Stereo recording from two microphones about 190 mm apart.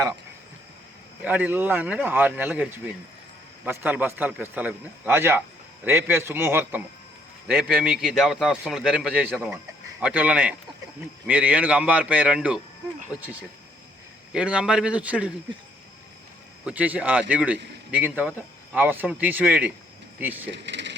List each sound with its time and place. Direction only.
1.2 s a man's voice: 10° right (ahead or behind)
14.3 s a man's voice: 5° right (ahead or behind)
16.6 s a man's voice: 10° right (ahead or behind)
20.5 s speech: 70° right (ahead or behind)